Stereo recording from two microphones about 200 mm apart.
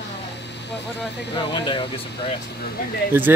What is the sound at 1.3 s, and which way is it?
Speech, 25° left (ahead or behind).